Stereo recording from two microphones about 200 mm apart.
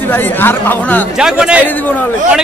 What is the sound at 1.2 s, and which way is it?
Speech, 5° right (ahead or behind).